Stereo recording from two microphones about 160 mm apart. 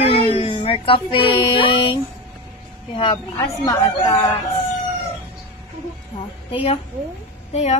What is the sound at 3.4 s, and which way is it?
Speech, 20° left (ahead or behind).